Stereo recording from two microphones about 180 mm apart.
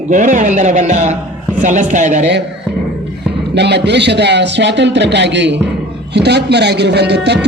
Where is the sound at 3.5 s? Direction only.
70° right (ahead or behind).